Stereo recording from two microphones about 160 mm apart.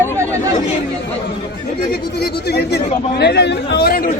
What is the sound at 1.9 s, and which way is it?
Speech, 85° left.